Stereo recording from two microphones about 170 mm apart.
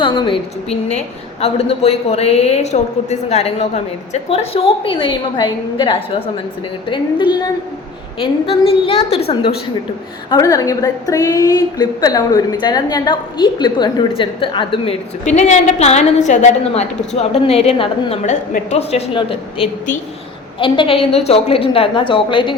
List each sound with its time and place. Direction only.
0.0 s a woman's voice: 30° left (ahead or behind)
10.2 s a woman's voice: 20° left (ahead or behind)
15.2 s a woman's voice: 45° left (ahead or behind)